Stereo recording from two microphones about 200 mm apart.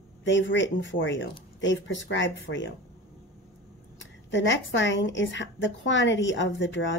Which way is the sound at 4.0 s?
65° left (ahead or behind).